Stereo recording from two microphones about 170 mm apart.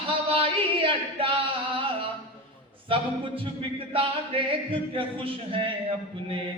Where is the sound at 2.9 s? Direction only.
30° right (ahead or behind).